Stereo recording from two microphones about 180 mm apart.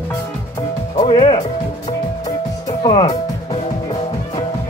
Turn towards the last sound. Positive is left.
turn(degrees=30)  # may be behind; listen again after turning